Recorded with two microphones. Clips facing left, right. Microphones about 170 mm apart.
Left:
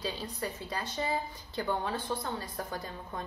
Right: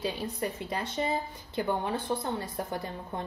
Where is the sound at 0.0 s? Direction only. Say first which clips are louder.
Right 4 dB; 20° right (ahead or behind).